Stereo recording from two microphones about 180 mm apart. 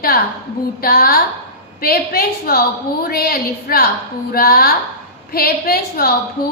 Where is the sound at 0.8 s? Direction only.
55° left (ahead or behind).